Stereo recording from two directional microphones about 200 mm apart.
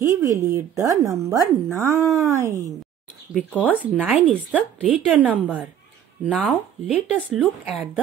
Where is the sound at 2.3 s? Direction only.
15° right (ahead or behind).